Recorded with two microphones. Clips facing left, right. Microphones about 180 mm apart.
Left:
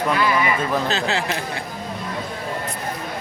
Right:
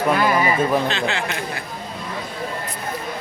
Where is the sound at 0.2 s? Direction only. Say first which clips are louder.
Right 2 dB; 40° right (ahead or behind).